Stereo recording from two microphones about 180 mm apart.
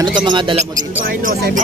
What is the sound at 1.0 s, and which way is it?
Speech, 50° right (ahead or behind).